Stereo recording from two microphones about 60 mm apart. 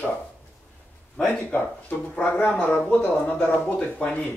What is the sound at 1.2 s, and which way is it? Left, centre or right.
Speech, left.